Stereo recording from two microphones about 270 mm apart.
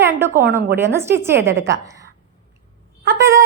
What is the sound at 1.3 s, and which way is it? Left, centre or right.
Speech, right.